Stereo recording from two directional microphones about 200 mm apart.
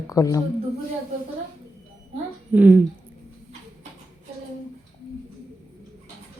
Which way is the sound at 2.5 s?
10° right (ahead or behind).